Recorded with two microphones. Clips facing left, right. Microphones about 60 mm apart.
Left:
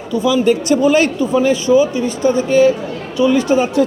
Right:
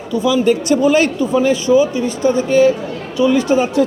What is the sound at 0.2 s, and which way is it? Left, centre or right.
A man's voice, left.